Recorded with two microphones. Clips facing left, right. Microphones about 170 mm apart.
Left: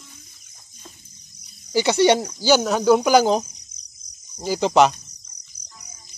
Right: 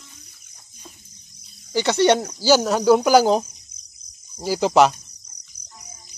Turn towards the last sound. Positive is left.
turn(degrees=-25)  # may be behind; listen again after turning